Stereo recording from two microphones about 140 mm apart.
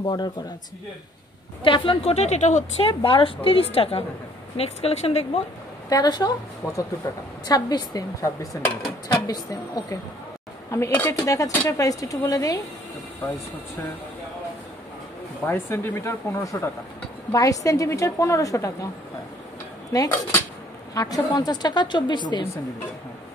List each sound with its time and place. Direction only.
0.0 s a woman's voice: 30° left (ahead or behind)
1.6 s a woman's voice: 35° left (ahead or behind); by 2.9 s 55° left (ahead or behind)
2.9 s a woman's voice: 35° left (ahead or behind)
5.9 s a woman's voice: 30° left (ahead or behind)
15.4 s a woman's voice: 15° left (ahead or behind)
19.9 s speech: 20° left (ahead or behind)
20.9 s a woman's voice: 25° left (ahead or behind)